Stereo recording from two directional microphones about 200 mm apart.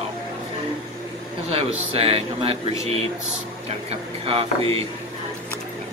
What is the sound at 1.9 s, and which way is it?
Speech, 30° right (ahead or behind).